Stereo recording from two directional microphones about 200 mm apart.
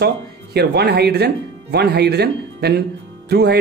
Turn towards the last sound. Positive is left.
turn(degrees=-55)  # may be behind; listen again after turning